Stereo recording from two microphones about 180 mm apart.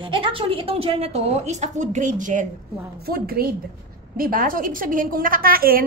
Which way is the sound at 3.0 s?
55° right (ahead or behind).